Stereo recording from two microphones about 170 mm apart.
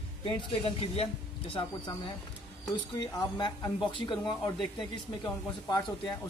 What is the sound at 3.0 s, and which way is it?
Speech, 25° left (ahead or behind).